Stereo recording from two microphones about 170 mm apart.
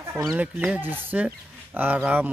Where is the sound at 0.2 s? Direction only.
Centre (ahead or behind).